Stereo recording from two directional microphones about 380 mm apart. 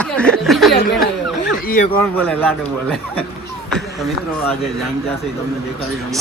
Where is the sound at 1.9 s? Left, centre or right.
Centre.